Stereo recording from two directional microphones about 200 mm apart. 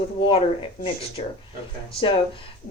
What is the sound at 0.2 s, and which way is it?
Speech, 25° left (ahead or behind).